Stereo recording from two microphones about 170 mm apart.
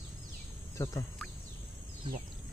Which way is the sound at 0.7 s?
20° left (ahead or behind).